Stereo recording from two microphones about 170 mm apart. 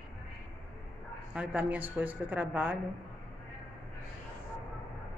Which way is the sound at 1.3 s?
5° right (ahead or behind).